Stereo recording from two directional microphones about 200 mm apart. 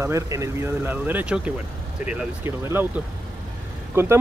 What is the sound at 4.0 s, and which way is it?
Speech, 10° right (ahead or behind).